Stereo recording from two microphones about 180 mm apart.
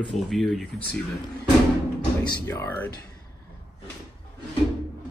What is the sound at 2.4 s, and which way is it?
Speech, 15° left (ahead or behind).